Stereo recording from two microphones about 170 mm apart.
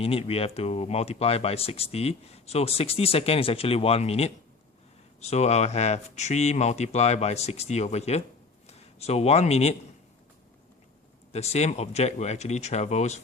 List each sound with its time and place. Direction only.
0.0 s a man's voice: 35° left (ahead or behind)
11.3 s speech: 40° left (ahead or behind)